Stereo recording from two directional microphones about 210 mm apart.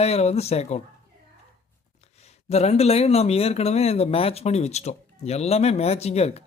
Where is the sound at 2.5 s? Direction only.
30° left (ahead or behind).